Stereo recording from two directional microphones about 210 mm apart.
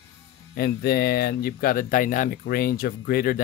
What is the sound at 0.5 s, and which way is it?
Speech, 45° left (ahead or behind).